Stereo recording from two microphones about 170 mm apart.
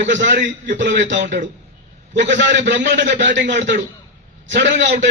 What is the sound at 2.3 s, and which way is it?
A man's voice, 90° right.